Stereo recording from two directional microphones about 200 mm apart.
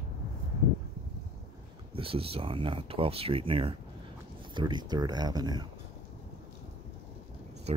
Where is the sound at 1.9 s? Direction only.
30° right (ahead or behind).